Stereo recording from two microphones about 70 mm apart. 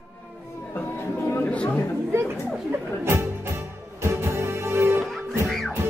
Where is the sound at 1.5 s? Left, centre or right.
Centre.